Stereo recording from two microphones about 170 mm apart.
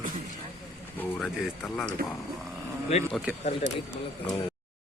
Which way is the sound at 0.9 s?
5° left (ahead or behind).